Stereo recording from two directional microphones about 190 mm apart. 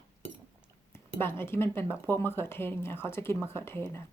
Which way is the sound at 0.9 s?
10° left (ahead or behind).